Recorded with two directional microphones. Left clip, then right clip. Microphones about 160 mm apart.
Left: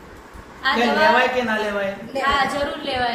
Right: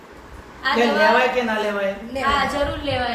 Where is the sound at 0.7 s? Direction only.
30° right (ahead or behind).